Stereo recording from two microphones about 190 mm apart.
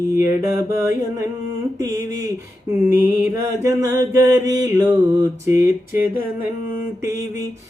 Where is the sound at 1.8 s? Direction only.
15° right (ahead or behind).